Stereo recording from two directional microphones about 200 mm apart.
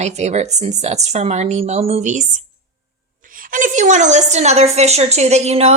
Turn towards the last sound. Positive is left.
turn(degrees=-30)  # may be behind; listen again after turning